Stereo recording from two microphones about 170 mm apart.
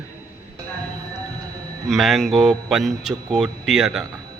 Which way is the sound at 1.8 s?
Centre (ahead or behind).